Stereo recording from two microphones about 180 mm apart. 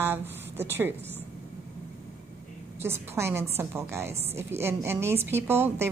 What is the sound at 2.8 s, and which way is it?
A woman's voice, 15° right (ahead or behind).